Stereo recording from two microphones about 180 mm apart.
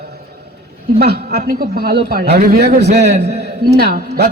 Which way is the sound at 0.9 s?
60° right (ahead or behind).